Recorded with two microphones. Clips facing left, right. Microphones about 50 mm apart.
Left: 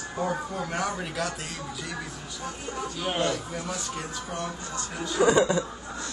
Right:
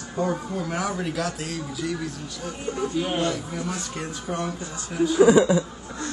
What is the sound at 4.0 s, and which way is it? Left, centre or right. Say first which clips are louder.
A man's voice: right 4 dB; centre.